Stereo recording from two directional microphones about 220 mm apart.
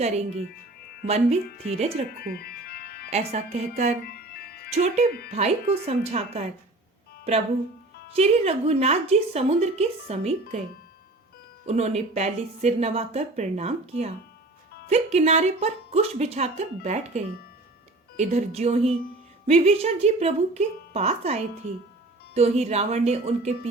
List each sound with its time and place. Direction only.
0.0 s speech: 30° right (ahead or behind)
2.1 s music: 45° left (ahead or behind)
3.1 s speech: 30° right (ahead or behind)
4.0 s music: 45° left (ahead or behind)
4.7 s speech: 30° right (ahead or behind)
8.0 s speech: 25° right (ahead or behind)
11.6 s speech: 30° right (ahead or behind)